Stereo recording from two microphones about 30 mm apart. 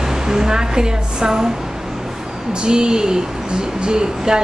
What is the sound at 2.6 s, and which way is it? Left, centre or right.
Speech, right.